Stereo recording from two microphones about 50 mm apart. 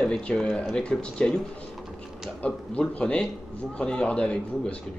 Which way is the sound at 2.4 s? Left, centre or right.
Left.